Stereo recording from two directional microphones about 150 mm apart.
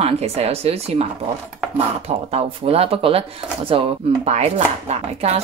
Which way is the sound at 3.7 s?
40° right (ahead or behind).